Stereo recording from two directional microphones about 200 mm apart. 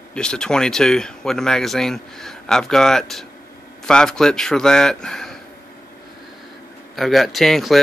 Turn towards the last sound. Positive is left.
turn(degrees=0)  # may be behind; listen again after turning